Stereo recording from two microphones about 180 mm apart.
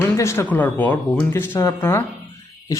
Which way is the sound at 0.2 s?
15° left (ahead or behind).